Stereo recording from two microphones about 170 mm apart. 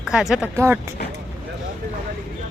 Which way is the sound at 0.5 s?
15° right (ahead or behind).